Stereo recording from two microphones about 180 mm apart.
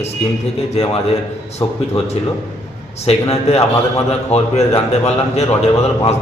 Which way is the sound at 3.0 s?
35° left (ahead or behind).